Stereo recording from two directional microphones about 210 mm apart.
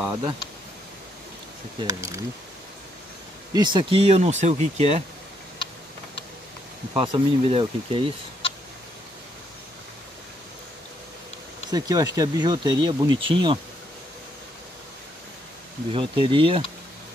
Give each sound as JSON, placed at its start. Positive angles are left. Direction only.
{"t": 0.1, "sound": "speech", "side_deg": -25}
{"t": 1.8, "sound": "speech", "side_deg": -15}
{"t": 3.5, "sound": "speech", "side_deg": -20}
{"t": 6.9, "sound": "speech", "side_deg": -25}
{"t": 11.7, "sound": "speech", "side_deg": -20}
{"t": 15.9, "sound": "speech", "side_deg": -25}